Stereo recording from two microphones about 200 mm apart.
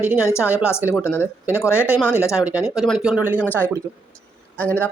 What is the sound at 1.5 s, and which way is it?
Speech, 10° left (ahead or behind).